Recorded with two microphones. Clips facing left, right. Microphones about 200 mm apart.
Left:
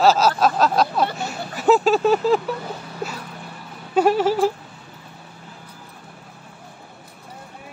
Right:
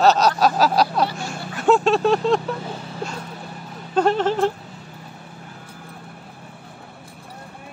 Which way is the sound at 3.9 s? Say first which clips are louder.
Left 1 dB; 10° left (ahead or behind).